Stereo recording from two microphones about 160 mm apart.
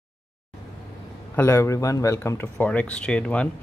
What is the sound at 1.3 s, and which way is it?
Speech, 15° left (ahead or behind).